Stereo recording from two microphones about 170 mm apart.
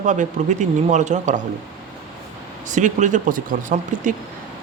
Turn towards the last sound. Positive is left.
turn(degrees=-50)  # may be behind; listen again after turning